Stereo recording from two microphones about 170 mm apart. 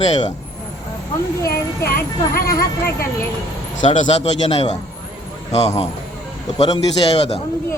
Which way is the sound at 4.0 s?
40° left (ahead or behind).